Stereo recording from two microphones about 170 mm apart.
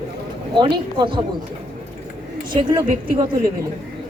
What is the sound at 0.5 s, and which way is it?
Speech, 25° right (ahead or behind).